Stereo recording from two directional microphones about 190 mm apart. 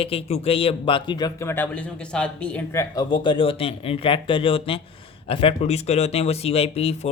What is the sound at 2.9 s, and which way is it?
Speech, 25° left (ahead or behind).